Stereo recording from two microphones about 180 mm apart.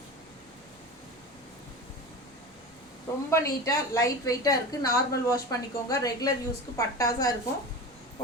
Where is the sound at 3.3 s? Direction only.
15° left (ahead or behind).